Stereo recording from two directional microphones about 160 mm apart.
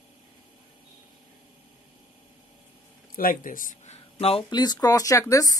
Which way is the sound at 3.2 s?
60° left (ahead or behind).